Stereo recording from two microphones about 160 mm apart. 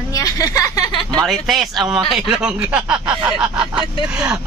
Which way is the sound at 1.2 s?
Centre (ahead or behind).